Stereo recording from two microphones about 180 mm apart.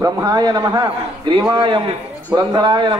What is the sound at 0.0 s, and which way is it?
A man's voice, 20° right (ahead or behind).